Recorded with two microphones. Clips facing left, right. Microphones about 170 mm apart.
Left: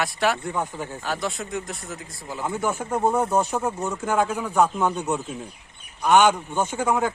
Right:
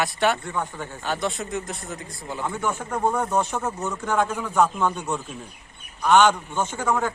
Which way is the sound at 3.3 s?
5° left (ahead or behind).